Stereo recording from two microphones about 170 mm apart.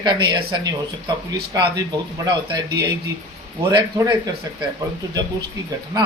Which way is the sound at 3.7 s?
20° right (ahead or behind).